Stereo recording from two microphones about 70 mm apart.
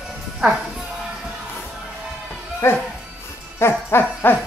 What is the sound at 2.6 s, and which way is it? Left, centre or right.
Speech, left.